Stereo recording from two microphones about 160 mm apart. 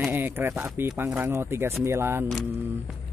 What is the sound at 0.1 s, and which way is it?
Speech, 10° right (ahead or behind).